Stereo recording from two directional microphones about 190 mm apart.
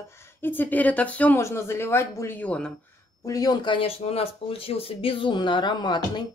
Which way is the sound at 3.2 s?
20° left (ahead or behind).